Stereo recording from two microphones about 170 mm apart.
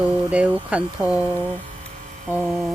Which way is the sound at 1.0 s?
15° left (ahead or behind).